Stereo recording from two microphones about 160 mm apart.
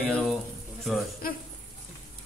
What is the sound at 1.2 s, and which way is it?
Speech, 65° left (ahead or behind).